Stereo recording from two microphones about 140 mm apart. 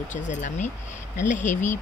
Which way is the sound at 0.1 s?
60° left (ahead or behind).